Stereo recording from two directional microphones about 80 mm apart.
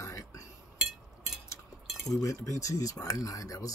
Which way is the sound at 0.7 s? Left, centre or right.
Centre.